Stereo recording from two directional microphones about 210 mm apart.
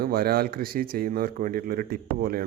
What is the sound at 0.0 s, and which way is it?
Speech, 45° right (ahead or behind).